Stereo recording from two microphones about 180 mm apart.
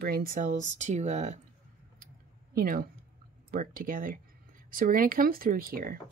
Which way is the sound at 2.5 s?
55° right (ahead or behind).